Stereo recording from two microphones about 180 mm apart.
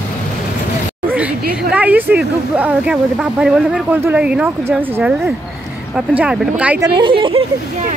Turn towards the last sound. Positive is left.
turn(degrees=-30)  # may be behind; listen again after turning